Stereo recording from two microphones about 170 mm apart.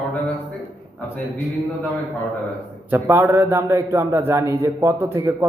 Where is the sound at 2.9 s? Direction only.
15° right (ahead or behind).